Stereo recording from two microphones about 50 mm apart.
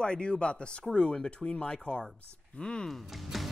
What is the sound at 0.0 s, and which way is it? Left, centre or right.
Speech, centre.